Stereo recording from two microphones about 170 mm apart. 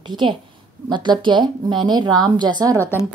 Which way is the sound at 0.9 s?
25° right (ahead or behind).